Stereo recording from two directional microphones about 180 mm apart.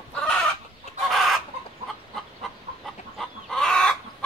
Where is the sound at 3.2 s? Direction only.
Centre (ahead or behind).